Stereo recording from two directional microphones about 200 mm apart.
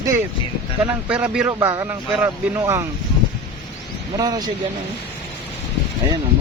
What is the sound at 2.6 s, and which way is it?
Speech, 15° right (ahead or behind).